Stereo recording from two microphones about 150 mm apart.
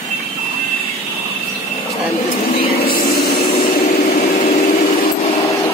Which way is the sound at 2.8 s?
75° left (ahead or behind).